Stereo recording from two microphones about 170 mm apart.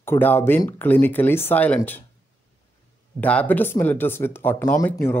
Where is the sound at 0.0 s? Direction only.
15° left (ahead or behind).